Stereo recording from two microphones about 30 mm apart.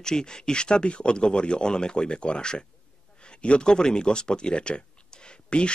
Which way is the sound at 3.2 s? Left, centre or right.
Left.